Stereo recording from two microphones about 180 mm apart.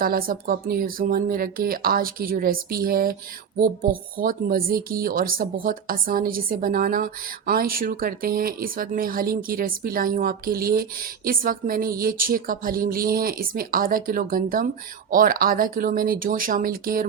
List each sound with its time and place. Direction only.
0.0 s speech: 55° right (ahead or behind)